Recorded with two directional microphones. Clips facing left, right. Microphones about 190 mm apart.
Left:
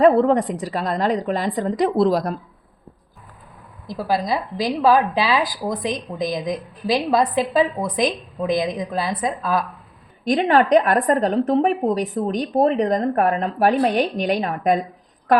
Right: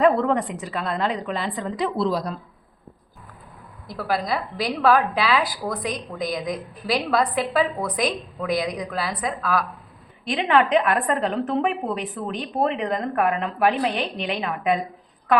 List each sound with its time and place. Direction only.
0.0 s a woman's voice: 35° left (ahead or behind)
3.8 s a woman's voice: 20° left (ahead or behind)
10.2 s a woman's voice: 40° left (ahead or behind)